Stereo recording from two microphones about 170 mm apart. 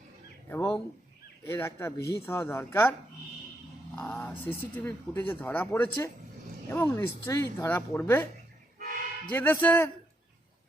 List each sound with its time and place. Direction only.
0.4 s speech: 10° left (ahead or behind)
3.9 s speech: 5° left (ahead or behind)
9.3 s speech: 10° left (ahead or behind)